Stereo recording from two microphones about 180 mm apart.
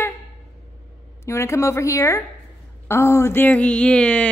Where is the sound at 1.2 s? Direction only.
15° left (ahead or behind).